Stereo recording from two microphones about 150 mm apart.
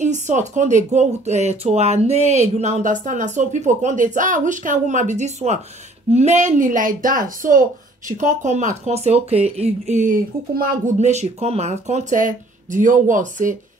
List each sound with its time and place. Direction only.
0.0 s speech: 55° right (ahead or behind)
8.1 s speech: 55° right (ahead or behind); by 10.8 s 75° right (ahead or behind)
11.0 s speech: 50° right (ahead or behind)